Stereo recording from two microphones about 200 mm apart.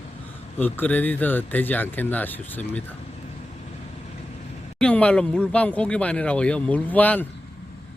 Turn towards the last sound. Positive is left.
turn(degrees=10)  # may be behind; listen again after turning